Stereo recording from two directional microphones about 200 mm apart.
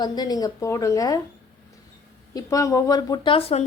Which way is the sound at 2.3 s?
15° left (ahead or behind).